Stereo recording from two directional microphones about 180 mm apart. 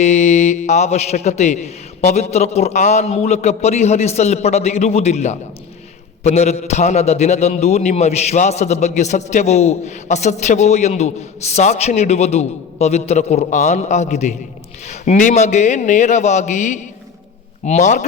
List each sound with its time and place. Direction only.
0.0 s a man's voice: 40° left (ahead or behind)